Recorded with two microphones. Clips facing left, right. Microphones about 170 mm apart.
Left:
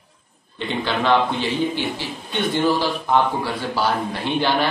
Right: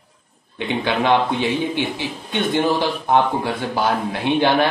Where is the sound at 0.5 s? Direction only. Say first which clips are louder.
Right 3 dB; 15° right (ahead or behind).